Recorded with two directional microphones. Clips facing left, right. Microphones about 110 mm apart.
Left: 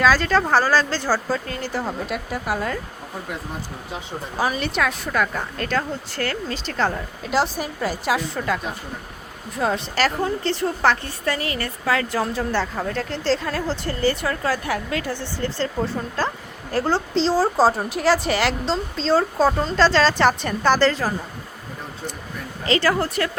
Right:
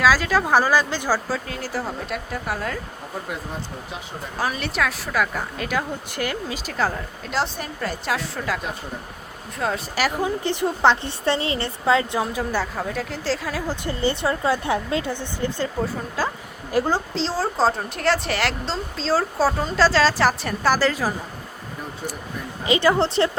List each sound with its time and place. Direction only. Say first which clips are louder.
0.0 s a woman's voice: left 1 dB; 5° right (ahead or behind)
1.5 s a woman's voice: left 2 dB; centre (ahead or behind)
4.4 s a woman's voice: left 2 dB; centre (ahead or behind)
9.9 s a woman's voice: left 1 dB; 10° right (ahead or behind)
12.2 s a woman's voice: left 1 dB; 10° right (ahead or behind)
13.8 s a woman's voice: right 1 dB; 20° right (ahead or behind)
17.2 s a woman's voice: left 4 dB; centre (ahead or behind)
22.6 s a woman's voice: right 2 dB; 15° right (ahead or behind)